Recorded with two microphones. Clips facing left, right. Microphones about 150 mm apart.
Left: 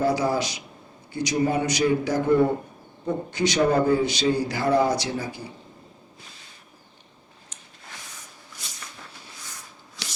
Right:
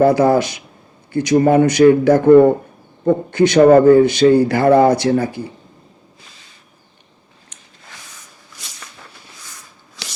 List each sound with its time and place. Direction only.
0.0 s a man's voice: 55° right (ahead or behind)
8.5 s a sound: 80° right
10.0 s chopping: 80° right